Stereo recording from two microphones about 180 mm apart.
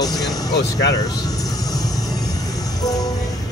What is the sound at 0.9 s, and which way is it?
Vehicle, 20° left (ahead or behind).